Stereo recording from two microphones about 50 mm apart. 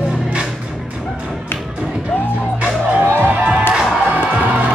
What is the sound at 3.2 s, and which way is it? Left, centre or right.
Music, right.